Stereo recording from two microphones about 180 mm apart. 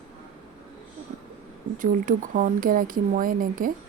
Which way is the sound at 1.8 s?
45° right (ahead or behind).